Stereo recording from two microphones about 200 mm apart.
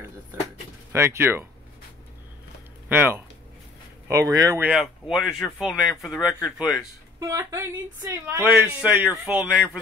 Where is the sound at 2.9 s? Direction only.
10° right (ahead or behind).